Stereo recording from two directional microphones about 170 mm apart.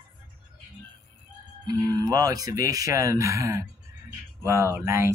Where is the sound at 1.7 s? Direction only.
20° right (ahead or behind).